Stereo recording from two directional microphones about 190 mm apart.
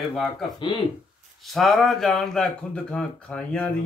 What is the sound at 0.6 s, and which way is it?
Speech, 25° left (ahead or behind).